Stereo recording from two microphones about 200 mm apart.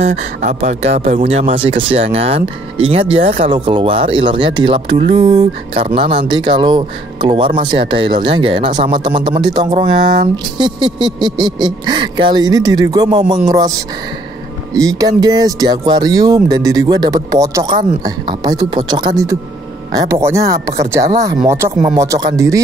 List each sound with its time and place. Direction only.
0.0 s speech: 35° right (ahead or behind); by 22.6 s 15° right (ahead or behind)